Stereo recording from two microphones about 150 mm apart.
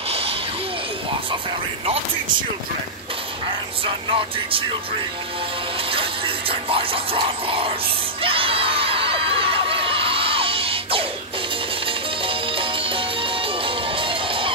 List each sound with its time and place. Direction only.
3.8 s music: 35° right (ahead or behind)
5.9 s music: 35° right (ahead or behind)
8.2 s crowd: 40° right (ahead or behind)
12.3 s music: 35° right (ahead or behind)